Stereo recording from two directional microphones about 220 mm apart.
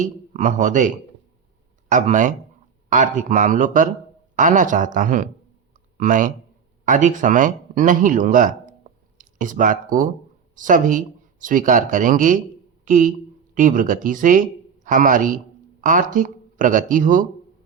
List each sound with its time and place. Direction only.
0.0 s speech: 35° right (ahead or behind)
12.8 s a sound: 35° right (ahead or behind)
13.5 s speech: 35° right (ahead or behind)